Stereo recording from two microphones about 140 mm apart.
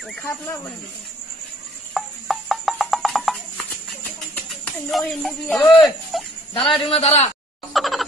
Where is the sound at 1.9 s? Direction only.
Centre (ahead or behind).